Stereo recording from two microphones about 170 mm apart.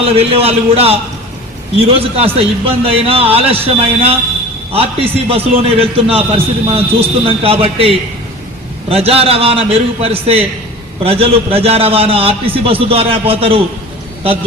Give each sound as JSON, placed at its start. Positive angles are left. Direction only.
{"t": 0.0, "sound": "a man's voice", "side_deg": -35}